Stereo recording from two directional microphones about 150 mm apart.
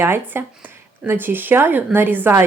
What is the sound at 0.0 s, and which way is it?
Speech, 15° right (ahead or behind).